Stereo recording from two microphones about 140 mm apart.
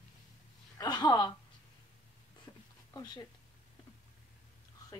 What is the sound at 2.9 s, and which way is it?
Speech, 25° left (ahead or behind).